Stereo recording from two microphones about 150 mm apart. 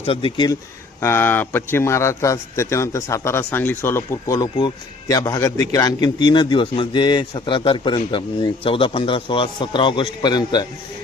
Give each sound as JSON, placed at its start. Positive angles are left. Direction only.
{"t": 0.0, "sound": "a man's voice", "side_deg": 40}
{"t": 1.0, "sound": "a man's voice", "side_deg": 15}